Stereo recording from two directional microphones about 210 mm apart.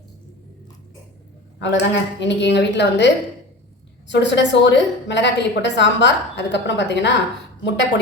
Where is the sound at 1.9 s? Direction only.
55° left (ahead or behind).